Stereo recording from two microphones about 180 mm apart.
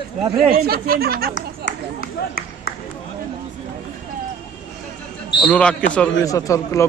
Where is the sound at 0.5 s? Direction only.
55° right (ahead or behind).